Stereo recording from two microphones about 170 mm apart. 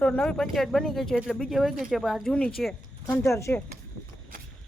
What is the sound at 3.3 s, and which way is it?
Speech, 15° left (ahead or behind).